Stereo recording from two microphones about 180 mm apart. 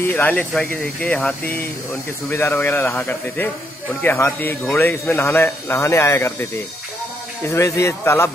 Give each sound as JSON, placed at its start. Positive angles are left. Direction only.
{"t": 0.0, "sound": "a man's voice", "side_deg": 10}
{"t": 7.4, "sound": "a man's voice", "side_deg": 15}